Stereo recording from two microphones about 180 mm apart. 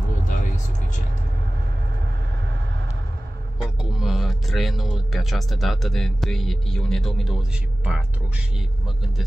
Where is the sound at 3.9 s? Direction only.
Centre (ahead or behind).